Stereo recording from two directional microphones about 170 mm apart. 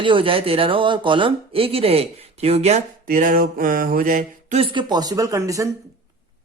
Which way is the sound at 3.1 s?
55° right (ahead or behind).